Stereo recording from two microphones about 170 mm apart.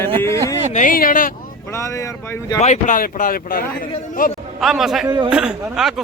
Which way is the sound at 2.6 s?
45° left (ahead or behind).